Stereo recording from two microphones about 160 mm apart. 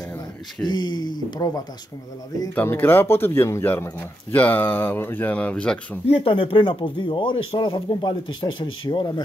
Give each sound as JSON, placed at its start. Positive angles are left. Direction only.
{"t": 0.7, "sound": "speech", "side_deg": 25}
{"t": 2.5, "sound": "speech", "side_deg": 15}
{"t": 6.0, "sound": "speech", "side_deg": 35}